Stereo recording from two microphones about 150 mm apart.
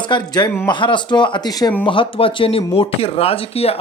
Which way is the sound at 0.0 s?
30° left (ahead or behind).